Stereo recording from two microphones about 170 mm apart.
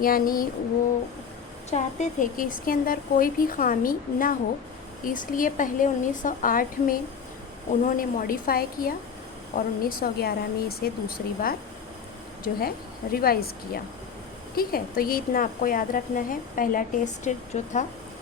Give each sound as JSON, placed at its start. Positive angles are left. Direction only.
{"t": 0.0, "sound": "speech", "side_deg": 55}
{"t": 1.7, "sound": "speech", "side_deg": 50}